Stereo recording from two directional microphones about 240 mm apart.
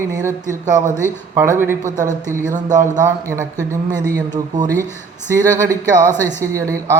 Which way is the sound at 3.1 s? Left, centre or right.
Centre.